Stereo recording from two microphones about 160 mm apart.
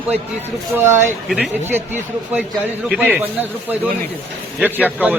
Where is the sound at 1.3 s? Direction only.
10° right (ahead or behind).